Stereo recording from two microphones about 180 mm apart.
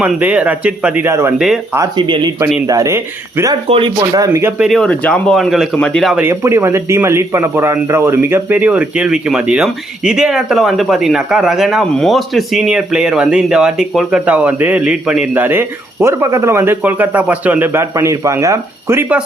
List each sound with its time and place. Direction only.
0.0 s a man's voice: 5° right (ahead or behind)
3.5 s speech: 30° right (ahead or behind); by 6.2 s centre (ahead or behind)
6.2 s a man's voice: 15° right (ahead or behind)